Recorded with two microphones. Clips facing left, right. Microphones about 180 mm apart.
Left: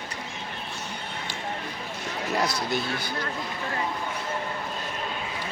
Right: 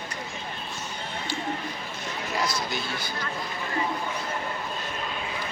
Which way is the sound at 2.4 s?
60° left (ahead or behind).